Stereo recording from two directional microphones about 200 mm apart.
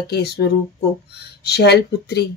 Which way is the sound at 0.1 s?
55° left (ahead or behind).